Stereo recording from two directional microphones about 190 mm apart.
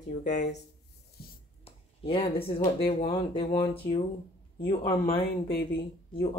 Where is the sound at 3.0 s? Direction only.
25° left (ahead or behind).